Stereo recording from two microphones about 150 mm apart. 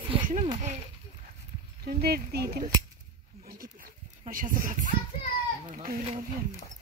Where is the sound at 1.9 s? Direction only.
90° right.